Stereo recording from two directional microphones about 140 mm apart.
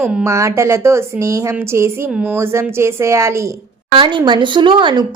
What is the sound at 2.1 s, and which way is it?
Speech, 5° right (ahead or behind).